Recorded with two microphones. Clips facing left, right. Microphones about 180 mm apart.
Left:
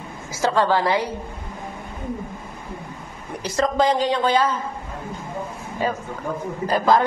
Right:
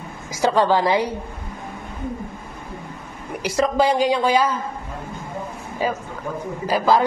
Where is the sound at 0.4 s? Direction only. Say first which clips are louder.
Right 2 dB; 15° right (ahead or behind).